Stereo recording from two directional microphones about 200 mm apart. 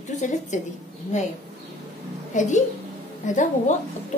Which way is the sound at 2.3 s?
40° left (ahead or behind).